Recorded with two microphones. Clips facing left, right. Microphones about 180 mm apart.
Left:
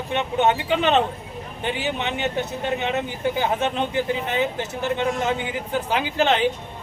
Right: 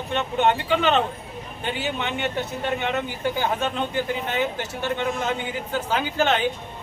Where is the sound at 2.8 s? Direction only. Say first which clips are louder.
Left 1 dB; 20° left (ahead or behind).